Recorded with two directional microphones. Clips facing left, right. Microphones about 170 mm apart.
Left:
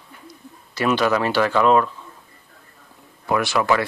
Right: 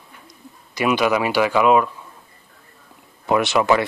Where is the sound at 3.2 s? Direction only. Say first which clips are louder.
Right 3 dB; 20° right (ahead or behind).